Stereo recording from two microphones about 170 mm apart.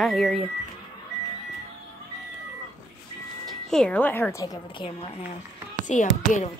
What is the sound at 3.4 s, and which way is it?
Speech, 5° left (ahead or behind).